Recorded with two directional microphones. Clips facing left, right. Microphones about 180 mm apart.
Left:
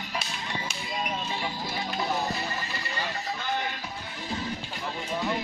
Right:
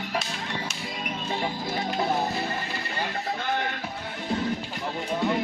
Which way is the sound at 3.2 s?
55° right (ahead or behind).